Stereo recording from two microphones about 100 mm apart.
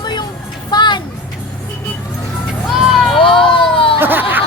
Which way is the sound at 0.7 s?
50° left (ahead or behind).